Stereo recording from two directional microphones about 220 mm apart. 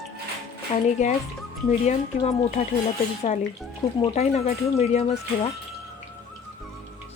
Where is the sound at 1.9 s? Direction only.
35° left (ahead or behind).